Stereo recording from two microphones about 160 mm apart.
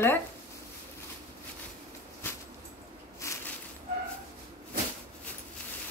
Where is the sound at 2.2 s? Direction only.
15° left (ahead or behind).